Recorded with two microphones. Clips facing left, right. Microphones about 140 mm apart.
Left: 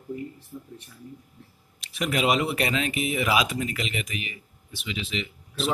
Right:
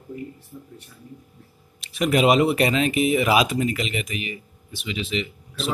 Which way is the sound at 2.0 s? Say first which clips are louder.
Right 6 dB; 25° right (ahead or behind).